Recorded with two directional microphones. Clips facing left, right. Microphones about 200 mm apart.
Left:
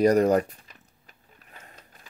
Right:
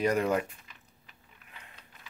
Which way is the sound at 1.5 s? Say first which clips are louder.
Left 4 dB; 45° left (ahead or behind).